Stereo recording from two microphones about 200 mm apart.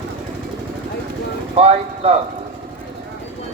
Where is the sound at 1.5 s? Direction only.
30° right (ahead or behind).